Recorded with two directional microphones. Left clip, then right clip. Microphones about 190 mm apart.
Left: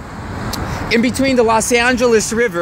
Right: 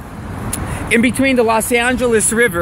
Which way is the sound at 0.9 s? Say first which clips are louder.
Right 1 dB; 5° right (ahead or behind).